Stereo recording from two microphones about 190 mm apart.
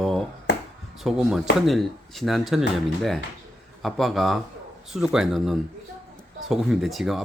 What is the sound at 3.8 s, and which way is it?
Speech, centre (ahead or behind).